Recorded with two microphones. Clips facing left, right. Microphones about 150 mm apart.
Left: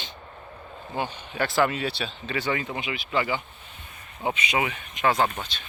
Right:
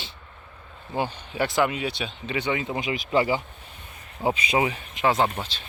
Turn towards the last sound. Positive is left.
turn(degrees=-30)  # may be behind; listen again after turning